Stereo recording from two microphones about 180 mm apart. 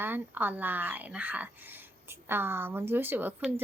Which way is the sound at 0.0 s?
10° right (ahead or behind).